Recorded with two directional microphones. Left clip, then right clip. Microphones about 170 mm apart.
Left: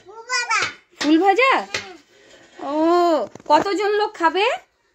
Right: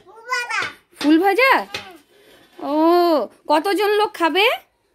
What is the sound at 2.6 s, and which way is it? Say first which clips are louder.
Speech: right 2 dB; 30° right (ahead or behind).